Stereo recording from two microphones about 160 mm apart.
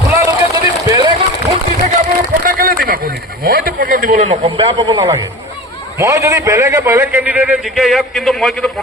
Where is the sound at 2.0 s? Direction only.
60° right (ahead or behind).